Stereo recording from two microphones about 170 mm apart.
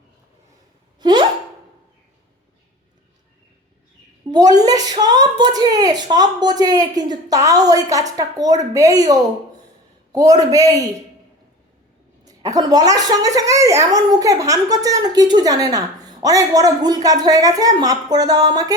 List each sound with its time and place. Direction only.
0.9 s a sound: 25° right (ahead or behind)
4.3 s a child's voice: 20° right (ahead or behind)
12.2 s a child's voice: 20° right (ahead or behind)